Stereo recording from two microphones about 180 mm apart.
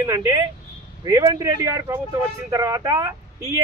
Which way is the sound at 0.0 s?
15° right (ahead or behind).